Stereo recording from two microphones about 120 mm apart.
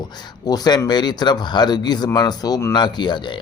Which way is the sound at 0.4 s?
35° left (ahead or behind).